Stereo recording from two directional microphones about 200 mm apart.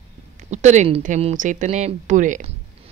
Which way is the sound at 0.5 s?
35° right (ahead or behind).